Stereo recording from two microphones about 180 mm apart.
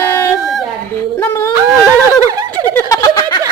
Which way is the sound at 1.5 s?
20° right (ahead or behind).